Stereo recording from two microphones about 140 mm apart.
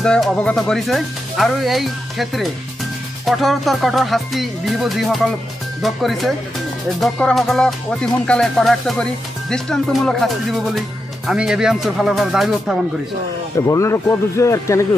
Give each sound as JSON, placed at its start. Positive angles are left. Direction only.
{"t": 0.0, "sound": "music", "side_deg": 5}
{"t": 13.6, "sound": "speech", "side_deg": 20}